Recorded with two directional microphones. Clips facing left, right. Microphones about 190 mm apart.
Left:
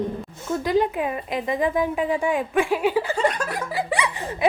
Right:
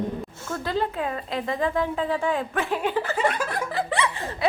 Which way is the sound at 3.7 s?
15° left (ahead or behind).